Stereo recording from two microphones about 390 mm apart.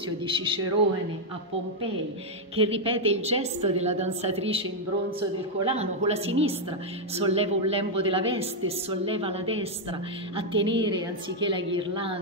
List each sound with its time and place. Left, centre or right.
0.3 s a woman's voice: centre
2.5 s a woman's voice: centre
5.7 s a woman's voice: centre